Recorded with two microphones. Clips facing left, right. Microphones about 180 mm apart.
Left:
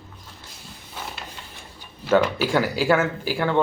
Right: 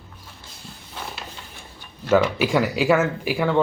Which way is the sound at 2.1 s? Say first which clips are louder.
Right 1 dB; 5° right (ahead or behind).